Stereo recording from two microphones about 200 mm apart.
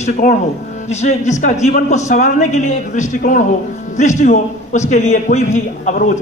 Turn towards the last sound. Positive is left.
turn(degrees=40)  # may be behind; listen again after turning